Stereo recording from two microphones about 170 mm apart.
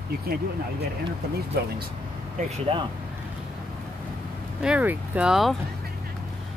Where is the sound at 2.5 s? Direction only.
35° right (ahead or behind).